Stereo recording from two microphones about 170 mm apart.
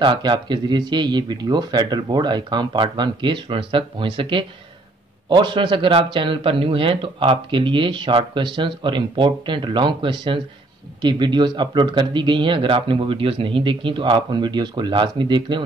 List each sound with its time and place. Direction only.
0.0 s speech: 30° right (ahead or behind)